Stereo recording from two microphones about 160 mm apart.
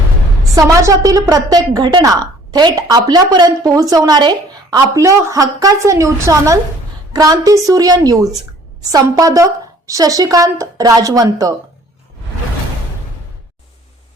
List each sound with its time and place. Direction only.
0.5 s a woman's voice: 20° right (ahead or behind)